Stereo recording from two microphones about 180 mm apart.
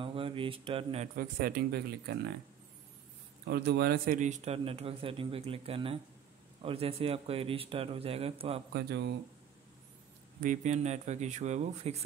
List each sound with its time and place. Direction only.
0.0 s speech: 30° right (ahead or behind)
1.1 s speech: 55° right (ahead or behind)
3.4 s a man's voice: 65° right (ahead or behind); by 8.6 s 35° right (ahead or behind)
8.7 s speech: 70° right (ahead or behind)
10.4 s a man's voice: 45° right (ahead or behind)